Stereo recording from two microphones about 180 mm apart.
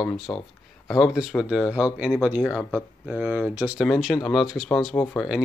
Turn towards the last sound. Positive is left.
turn(degrees=15)  # may be behind; listen again after turning